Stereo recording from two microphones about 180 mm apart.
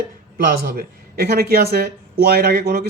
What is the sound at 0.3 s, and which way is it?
A man's voice, 55° right (ahead or behind).